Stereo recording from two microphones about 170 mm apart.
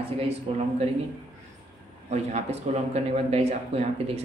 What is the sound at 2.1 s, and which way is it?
Speech, 40° right (ahead or behind).